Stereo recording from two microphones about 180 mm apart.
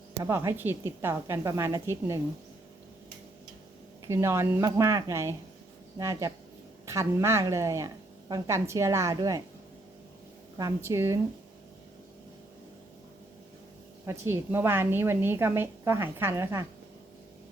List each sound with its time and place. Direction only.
0.2 s a woman's voice: 15° right (ahead or behind)
4.1 s a woman's voice: 15° right (ahead or behind)
10.8 s a woman's voice: 15° right (ahead or behind)
14.1 s a woman's voice: 15° right (ahead or behind)